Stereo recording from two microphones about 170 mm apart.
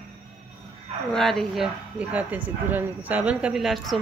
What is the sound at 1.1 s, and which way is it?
Speech, centre (ahead or behind).